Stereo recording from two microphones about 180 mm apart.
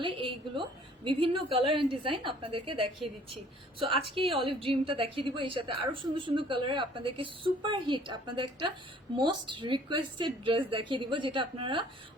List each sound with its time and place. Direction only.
0.0 s a woman's voice: 30° right (ahead or behind)
3.9 s a woman's voice: 30° right (ahead or behind)